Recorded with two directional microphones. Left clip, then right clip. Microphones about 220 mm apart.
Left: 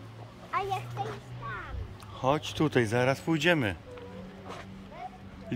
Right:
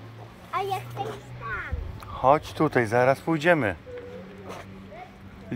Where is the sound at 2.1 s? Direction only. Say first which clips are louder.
Right 8 dB; 15° left (ahead or behind).